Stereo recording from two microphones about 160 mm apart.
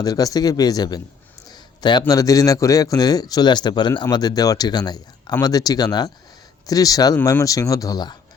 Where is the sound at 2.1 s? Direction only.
20° left (ahead or behind).